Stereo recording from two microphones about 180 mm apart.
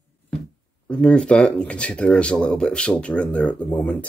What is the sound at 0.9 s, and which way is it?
Speech, 5° left (ahead or behind).